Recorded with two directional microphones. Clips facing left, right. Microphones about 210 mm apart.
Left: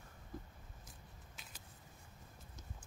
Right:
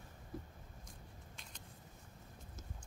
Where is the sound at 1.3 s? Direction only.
5° left (ahead or behind).